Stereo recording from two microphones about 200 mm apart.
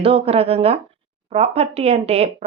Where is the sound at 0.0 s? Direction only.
30° right (ahead or behind).